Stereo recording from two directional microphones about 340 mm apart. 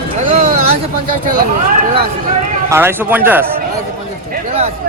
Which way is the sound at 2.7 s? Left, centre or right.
Centre.